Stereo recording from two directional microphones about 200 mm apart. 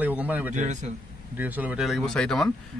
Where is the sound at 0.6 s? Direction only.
40° right (ahead or behind).